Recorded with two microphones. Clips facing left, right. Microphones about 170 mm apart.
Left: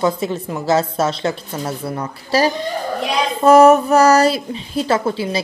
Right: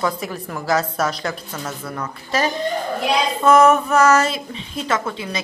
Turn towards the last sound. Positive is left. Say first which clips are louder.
# left 5 dB
turn(degrees=30)  # may be behind; listen again after turning